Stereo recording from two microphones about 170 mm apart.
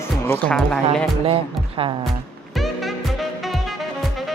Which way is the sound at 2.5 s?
Centre (ahead or behind).